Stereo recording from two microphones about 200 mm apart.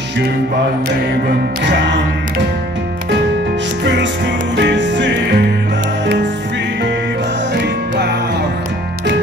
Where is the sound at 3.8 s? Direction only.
60° right (ahead or behind).